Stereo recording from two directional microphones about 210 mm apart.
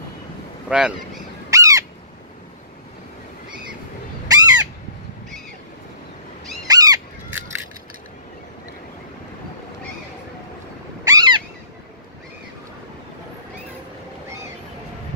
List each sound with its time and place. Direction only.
0.7 s speech: 5° right (ahead or behind)
1.5 s bird: 15° right (ahead or behind)
4.3 s crow: 20° right (ahead or behind)
6.7 s fowl: 20° right (ahead or behind)
11.1 s owl: 20° right (ahead or behind)